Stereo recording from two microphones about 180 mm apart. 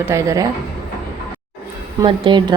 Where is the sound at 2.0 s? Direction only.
25° right (ahead or behind).